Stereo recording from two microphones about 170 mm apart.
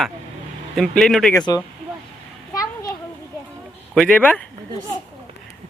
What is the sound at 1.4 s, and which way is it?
Speech, 25° left (ahead or behind).